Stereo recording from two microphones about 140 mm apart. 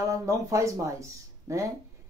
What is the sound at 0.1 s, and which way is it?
Speech, 25° right (ahead or behind).